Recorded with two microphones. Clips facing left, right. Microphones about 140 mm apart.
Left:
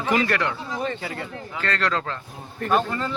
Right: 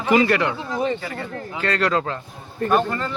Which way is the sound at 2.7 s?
5° left (ahead or behind).